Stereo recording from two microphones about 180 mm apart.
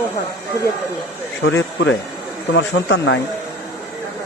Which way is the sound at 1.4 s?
90° left.